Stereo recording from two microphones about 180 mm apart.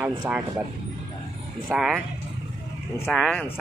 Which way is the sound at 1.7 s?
5° right (ahead or behind).